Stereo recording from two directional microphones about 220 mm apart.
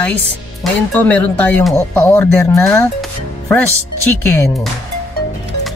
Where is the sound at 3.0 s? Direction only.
5° left (ahead or behind).